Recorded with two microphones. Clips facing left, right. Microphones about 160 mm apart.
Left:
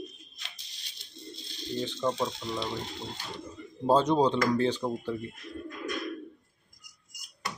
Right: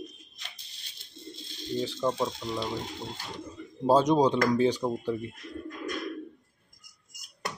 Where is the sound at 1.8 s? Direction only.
5° right (ahead or behind).